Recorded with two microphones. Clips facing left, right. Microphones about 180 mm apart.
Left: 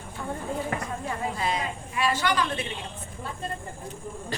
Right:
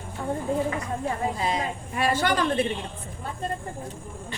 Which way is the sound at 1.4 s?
25° right (ahead or behind).